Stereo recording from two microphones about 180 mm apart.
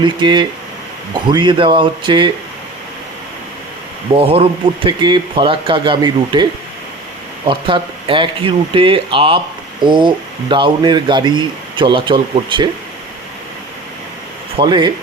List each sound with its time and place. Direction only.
0.0 s speech: 25° right (ahead or behind)
4.1 s speech: 30° right (ahead or behind)
14.6 s speech: 25° right (ahead or behind)